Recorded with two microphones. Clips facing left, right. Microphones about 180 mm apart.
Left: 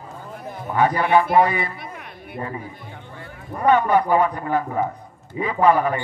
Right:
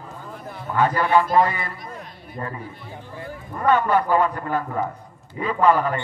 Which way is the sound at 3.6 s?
15° left (ahead or behind).